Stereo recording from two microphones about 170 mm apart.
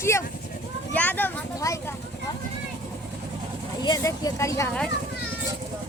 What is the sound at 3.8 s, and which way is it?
Speech, 20° left (ahead or behind).